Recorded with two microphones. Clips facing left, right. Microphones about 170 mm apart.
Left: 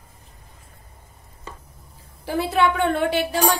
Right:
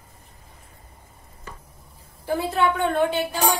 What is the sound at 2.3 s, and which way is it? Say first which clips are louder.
A woman's voice: left 2 dB; 80° left.